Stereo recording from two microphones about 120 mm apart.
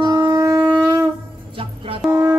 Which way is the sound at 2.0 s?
Centre (ahead or behind).